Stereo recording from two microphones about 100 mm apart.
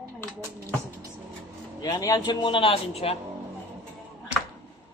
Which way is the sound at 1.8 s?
40° left (ahead or behind).